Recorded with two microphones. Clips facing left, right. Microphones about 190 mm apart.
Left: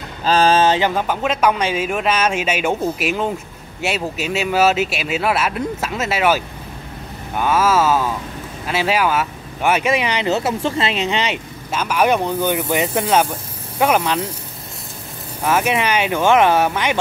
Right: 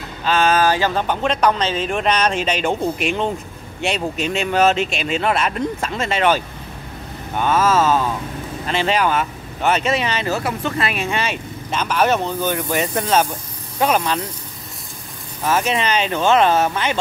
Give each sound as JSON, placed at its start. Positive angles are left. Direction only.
{"t": 0.2, "sound": "mantra", "side_deg": 35}
{"t": 0.9, "sound": "speech", "side_deg": 5}
{"t": 11.7, "sound": "speech", "side_deg": 10}
{"t": 15.4, "sound": "speech", "side_deg": 10}